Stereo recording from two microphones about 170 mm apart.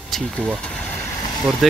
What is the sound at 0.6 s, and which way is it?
Vehicle, 10° left (ahead or behind).